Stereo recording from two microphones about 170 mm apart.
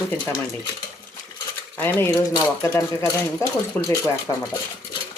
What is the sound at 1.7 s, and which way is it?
Cutlery, 15° left (ahead or behind).